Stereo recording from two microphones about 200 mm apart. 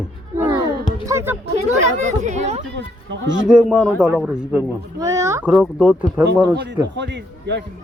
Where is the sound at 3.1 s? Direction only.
65° right (ahead or behind).